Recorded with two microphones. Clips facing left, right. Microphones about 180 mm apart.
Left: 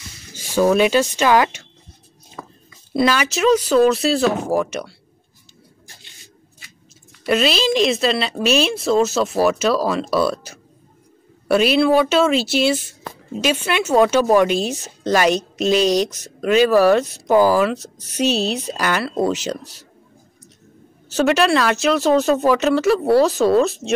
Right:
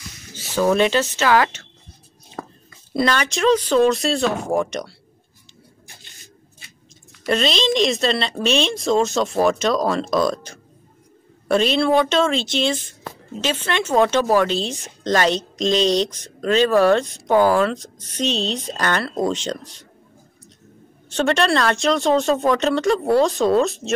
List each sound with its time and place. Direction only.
0.4 s speech: 10° left (ahead or behind)
2.4 s whispering: 50° right (ahead or behind)
3.0 s speech: 5° left (ahead or behind)
7.2 s speech: 5° left (ahead or behind)
21.1 s speech: 5° left (ahead or behind)